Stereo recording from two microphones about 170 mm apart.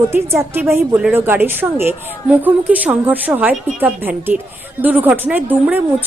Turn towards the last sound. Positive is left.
turn(degrees=-10)  # may be behind; listen again after turning